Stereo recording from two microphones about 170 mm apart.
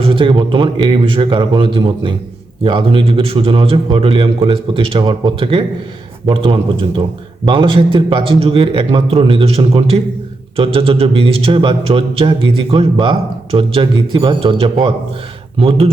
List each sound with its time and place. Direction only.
0.0 s a man's voice: 30° right (ahead or behind)